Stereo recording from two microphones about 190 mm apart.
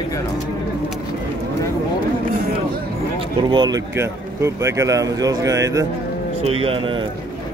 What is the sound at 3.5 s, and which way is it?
A man's voice, 20° right (ahead or behind).